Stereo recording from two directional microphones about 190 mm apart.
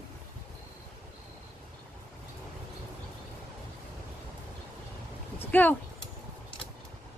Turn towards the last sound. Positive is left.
turn(degrees=10)  # may be behind; listen again after turning